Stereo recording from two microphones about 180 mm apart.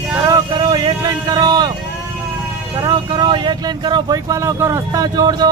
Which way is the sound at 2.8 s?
25° right (ahead or behind).